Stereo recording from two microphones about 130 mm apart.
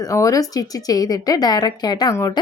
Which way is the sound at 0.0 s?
25° left (ahead or behind).